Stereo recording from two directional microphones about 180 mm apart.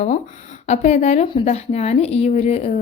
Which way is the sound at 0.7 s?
40° left (ahead or behind).